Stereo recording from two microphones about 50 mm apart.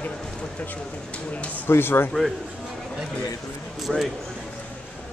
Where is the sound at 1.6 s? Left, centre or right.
Left.